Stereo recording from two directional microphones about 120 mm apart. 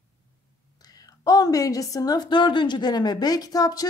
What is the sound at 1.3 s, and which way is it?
A woman's voice, 30° left (ahead or behind).